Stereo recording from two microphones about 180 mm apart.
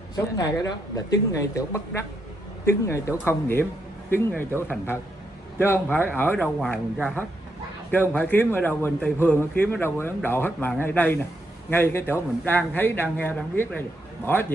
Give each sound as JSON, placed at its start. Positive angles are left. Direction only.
{"t": 0.1, "sound": "a man's voice", "side_deg": 20}